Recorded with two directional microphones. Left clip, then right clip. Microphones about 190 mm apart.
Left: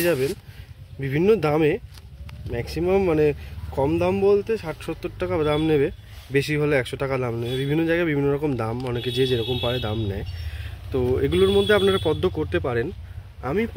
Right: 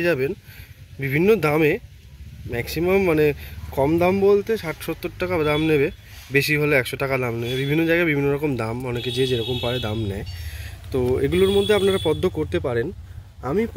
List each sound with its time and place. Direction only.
0.0 s speech: 5° right (ahead or behind)
3.8 s speech: 20° right (ahead or behind)